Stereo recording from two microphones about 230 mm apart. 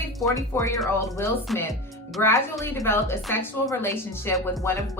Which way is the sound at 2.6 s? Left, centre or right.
Centre.